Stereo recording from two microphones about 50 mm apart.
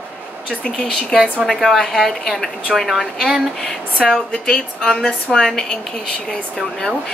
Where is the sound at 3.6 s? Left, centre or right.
Centre.